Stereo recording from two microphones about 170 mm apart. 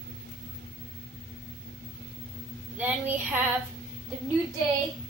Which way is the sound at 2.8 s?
10° right (ahead or behind).